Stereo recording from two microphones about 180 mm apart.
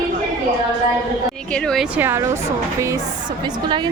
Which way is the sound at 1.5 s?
5° left (ahead or behind).